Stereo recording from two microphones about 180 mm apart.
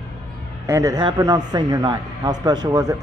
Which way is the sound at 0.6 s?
15° right (ahead or behind).